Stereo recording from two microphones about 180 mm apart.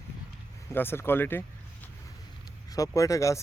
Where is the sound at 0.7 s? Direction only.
10° left (ahead or behind).